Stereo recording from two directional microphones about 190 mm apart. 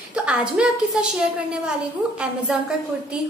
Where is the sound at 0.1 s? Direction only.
5° right (ahead or behind).